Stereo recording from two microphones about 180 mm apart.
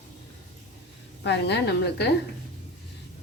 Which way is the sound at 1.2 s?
70° left (ahead or behind).